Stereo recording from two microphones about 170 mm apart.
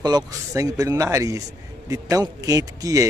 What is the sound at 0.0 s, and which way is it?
Speech, 20° right (ahead or behind).